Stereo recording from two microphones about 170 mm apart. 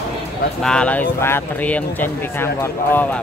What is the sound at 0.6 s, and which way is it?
Speech, 5° left (ahead or behind).